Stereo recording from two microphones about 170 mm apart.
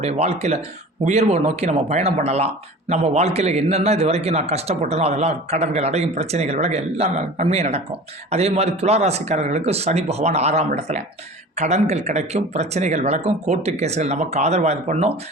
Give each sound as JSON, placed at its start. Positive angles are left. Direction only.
{"t": 0.0, "sound": "a man's voice", "side_deg": -40}